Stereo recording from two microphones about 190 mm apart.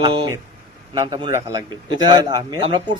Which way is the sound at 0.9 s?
25° right (ahead or behind).